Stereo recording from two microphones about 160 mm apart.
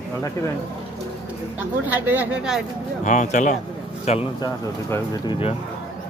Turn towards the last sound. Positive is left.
turn(degrees=30)  # may be behind; listen again after turning